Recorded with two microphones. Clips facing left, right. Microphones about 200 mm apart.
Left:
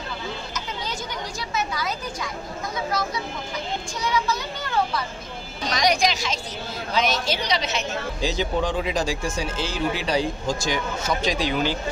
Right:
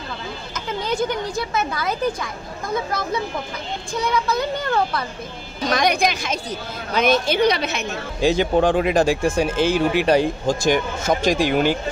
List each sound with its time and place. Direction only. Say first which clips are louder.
0.8 s a woman's voice: right 9 dB; 55° right (ahead or behind)
3.9 s a woman's voice: right 5 dB; 55° right (ahead or behind)